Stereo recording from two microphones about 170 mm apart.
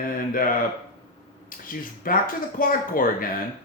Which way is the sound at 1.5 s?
55° left (ahead or behind).